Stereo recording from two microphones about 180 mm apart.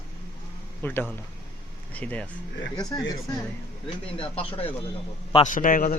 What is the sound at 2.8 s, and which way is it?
Speech, 20° left (ahead or behind).